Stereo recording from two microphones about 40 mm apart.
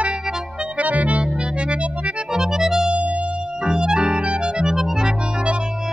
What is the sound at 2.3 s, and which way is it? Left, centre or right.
Music, centre.